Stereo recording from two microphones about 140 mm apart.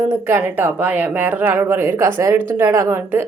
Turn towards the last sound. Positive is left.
turn(degrees=-15)  # may be behind; listen again after turning